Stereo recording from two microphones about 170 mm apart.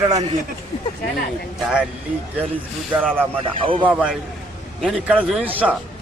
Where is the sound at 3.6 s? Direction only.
30° right (ahead or behind).